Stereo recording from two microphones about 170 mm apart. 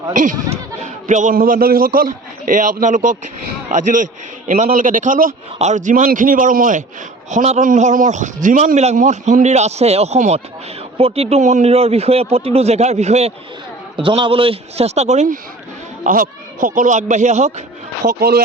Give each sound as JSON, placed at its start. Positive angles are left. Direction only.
{"t": 0.1, "sound": "a man's voice", "side_deg": -50}
{"t": 16.0, "sound": "a man's voice", "side_deg": -55}
{"t": 18.0, "sound": "speech", "side_deg": -65}